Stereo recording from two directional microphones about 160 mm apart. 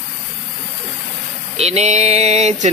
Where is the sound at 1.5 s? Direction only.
40° right (ahead or behind).